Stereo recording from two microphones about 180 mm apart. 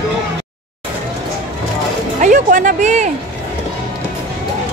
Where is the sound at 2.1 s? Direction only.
45° right (ahead or behind).